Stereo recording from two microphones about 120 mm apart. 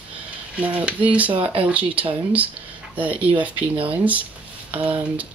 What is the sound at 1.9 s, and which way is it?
Speech, 45° right (ahead or behind).